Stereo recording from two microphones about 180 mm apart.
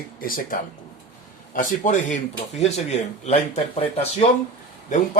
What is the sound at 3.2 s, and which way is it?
Speech, 35° left (ahead or behind).